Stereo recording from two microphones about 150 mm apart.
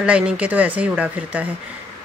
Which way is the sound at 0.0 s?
10° right (ahead or behind).